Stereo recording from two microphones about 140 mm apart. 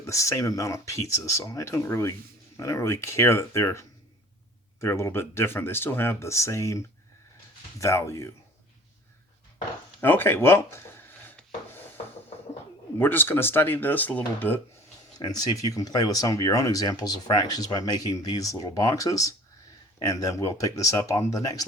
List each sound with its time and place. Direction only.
0.0 s speech: 20° left (ahead or behind)
10.0 s speech: 15° left (ahead or behind)
11.2 s wood: 15° left (ahead or behind)
13.0 s speech: 15° left (ahead or behind)
15.2 s speech: 30° left (ahead or behind)